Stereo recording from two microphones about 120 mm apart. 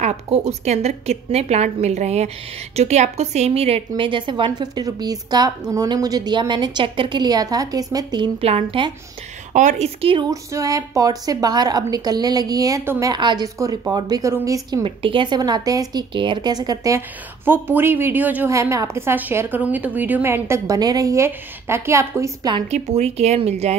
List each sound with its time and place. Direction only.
0.0 s a woman's voice: 65° right (ahead or behind); by 8.3 s 35° right (ahead or behind)
8.4 s speech: 55° right (ahead or behind)
9.5 s speech: 90° right; by 10.2 s 55° right (ahead or behind)
10.3 s a woman's voice: 30° right (ahead or behind)
13.2 s a woman's voice: 40° right (ahead or behind)
14.8 s a woman's voice: 45° right (ahead or behind); by 17.0 s 30° right (ahead or behind)
17.5 s speech: 20° right (ahead or behind)
18.5 s a woman's voice: 25° right (ahead or behind)
22.7 s speech: 65° right (ahead or behind)